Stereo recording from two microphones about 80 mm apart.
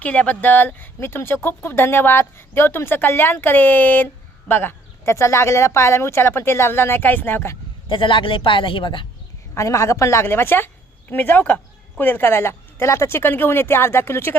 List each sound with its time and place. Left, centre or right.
0.0 s speech: centre
7.9 s a man's voice: left
9.6 s speech: left